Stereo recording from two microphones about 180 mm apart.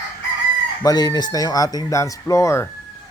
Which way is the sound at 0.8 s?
20° left (ahead or behind).